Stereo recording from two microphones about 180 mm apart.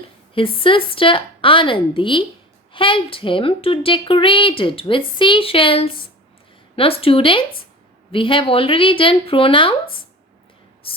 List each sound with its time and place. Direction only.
0.3 s a woman's voice: 30° left (ahead or behind)
10.8 s speech: 30° left (ahead or behind)